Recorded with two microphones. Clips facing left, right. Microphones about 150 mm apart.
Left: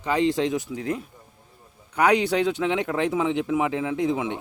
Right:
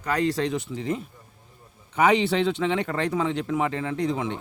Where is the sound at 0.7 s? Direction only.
Centre (ahead or behind).